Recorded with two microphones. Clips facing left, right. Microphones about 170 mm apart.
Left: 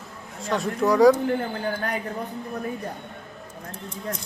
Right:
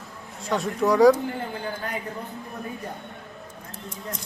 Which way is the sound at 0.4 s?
Centre (ahead or behind).